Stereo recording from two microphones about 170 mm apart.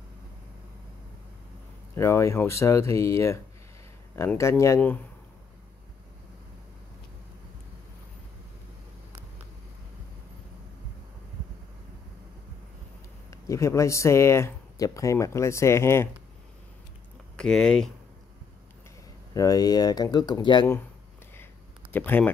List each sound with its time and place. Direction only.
2.0 s speech: 15° left (ahead or behind)
13.3 s speech: 20° left (ahead or behind)
17.4 s speech: 5° left (ahead or behind)
19.3 s speech: 20° left (ahead or behind)
21.9 s speech: 10° left (ahead or behind)